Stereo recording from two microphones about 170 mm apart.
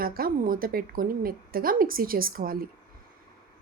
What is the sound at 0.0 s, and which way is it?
Speech, 60° right (ahead or behind).